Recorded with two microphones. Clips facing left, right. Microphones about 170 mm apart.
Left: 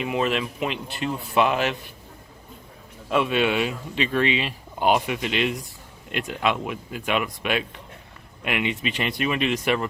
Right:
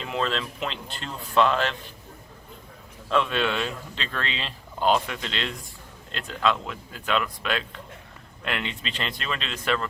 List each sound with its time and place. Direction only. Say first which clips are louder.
0.0 s speech: left 4 dB; 15° left (ahead or behind)
3.1 s speech: left 3 dB; 15° left (ahead or behind)